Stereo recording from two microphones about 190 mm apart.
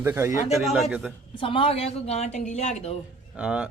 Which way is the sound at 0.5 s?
Centre (ahead or behind).